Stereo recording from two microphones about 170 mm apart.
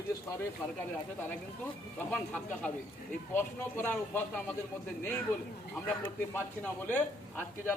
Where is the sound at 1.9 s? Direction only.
10° left (ahead or behind).